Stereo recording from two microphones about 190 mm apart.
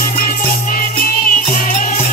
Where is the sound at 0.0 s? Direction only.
45° left (ahead or behind).